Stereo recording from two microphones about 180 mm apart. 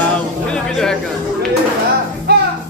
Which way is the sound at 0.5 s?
5° left (ahead or behind).